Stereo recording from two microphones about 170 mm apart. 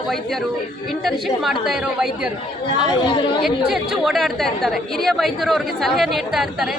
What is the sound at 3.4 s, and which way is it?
A woman's voice, centre (ahead or behind).